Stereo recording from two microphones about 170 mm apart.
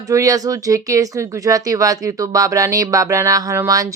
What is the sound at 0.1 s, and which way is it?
Speech, 20° right (ahead or behind).